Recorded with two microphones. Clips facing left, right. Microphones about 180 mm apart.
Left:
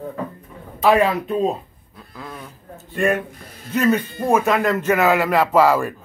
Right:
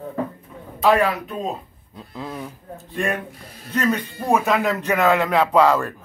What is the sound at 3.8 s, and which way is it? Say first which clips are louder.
Speech: left 4 dB; 5° left (ahead or behind).